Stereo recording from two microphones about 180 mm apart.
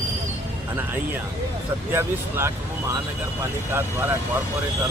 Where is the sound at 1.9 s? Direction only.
15° right (ahead or behind).